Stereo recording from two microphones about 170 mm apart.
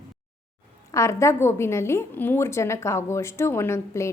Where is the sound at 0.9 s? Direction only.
15° left (ahead or behind).